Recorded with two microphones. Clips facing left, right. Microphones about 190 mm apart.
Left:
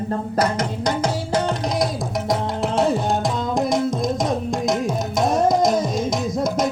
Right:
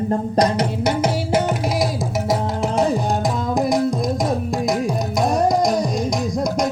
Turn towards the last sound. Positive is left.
turn(degrees=0)  # may be behind; listen again after turning